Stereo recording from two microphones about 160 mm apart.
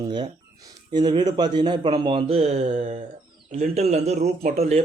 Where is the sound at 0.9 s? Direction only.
25° right (ahead or behind).